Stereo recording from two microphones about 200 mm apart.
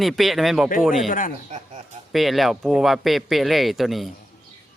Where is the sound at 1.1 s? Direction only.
45° left (ahead or behind).